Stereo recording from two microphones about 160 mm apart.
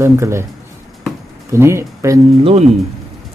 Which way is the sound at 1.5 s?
15° right (ahead or behind).